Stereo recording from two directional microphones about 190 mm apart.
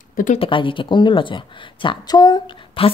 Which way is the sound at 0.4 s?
25° left (ahead or behind).